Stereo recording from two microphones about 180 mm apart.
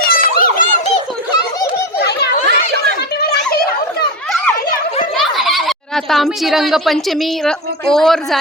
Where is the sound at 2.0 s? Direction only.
65° left (ahead or behind).